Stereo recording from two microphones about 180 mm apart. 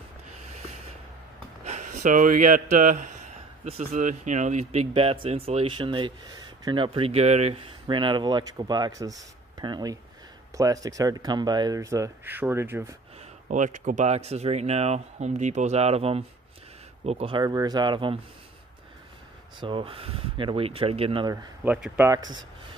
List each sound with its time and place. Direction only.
1.6 s a man's voice: 40° right (ahead or behind)
7.8 s speech: 25° right (ahead or behind)
13.5 s speech: 45° right (ahead or behind); by 18.2 s 25° right (ahead or behind)
19.6 s speech: 30° right (ahead or behind)
21.6 s speech: 5° right (ahead or behind)
22.0 s speech: 20° right (ahead or behind)